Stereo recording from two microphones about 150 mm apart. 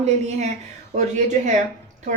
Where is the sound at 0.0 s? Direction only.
50° right (ahead or behind).